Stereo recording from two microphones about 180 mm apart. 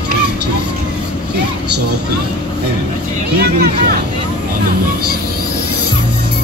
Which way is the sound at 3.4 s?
55° right (ahead or behind).